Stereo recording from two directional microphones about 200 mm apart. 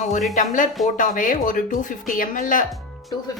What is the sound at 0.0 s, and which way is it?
Speech, 40° left (ahead or behind).